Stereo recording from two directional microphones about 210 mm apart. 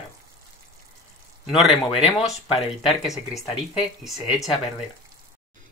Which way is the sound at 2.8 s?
Centre (ahead or behind).